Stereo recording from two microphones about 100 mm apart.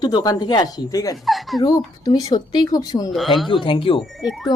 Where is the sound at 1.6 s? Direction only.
40° left (ahead or behind).